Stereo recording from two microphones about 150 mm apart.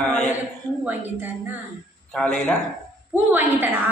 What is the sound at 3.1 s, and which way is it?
Speech, 15° right (ahead or behind).